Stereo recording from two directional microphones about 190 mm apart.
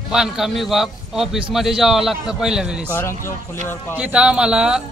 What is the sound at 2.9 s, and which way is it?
A man's voice, 10° left (ahead or behind).